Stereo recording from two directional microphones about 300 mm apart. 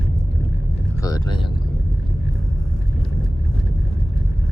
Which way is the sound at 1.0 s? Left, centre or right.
Centre.